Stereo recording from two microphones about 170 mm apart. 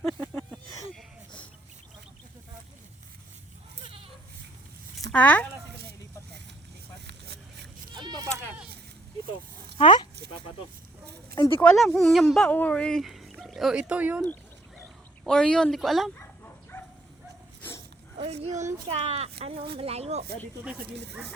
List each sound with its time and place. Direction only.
0.0 s a sound: 5° left (ahead or behind)
5.1 s speech: 10° left (ahead or behind)
7.1 s vehicle: 85° right
7.9 s a sound: 25° right (ahead or behind)
9.7 s speech: 30° left (ahead or behind)
11.6 s speech: centre (ahead or behind)
15.2 s speech: 5° left (ahead or behind)
16.1 s bow-wow: 15° left (ahead or behind)
17.6 s a sound: 15° left (ahead or behind)
18.2 s speech: 40° right (ahead or behind)